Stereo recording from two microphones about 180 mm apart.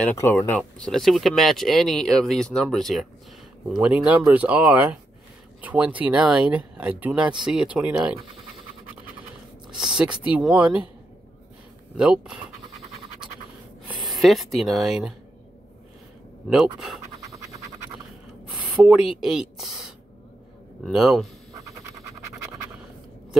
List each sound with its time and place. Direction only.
0.0 s speech: 10° left (ahead or behind); by 8.1 s 5° right (ahead or behind)
9.8 s speech: 5° right (ahead or behind)
13.8 s a sound: 25° right (ahead or behind)
14.1 s speech: centre (ahead or behind)
16.4 s speech: centre (ahead or behind)
18.6 s speech: 5° right (ahead or behind)